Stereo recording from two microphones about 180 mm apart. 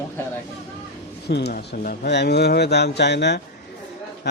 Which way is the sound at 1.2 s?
65° left (ahead or behind).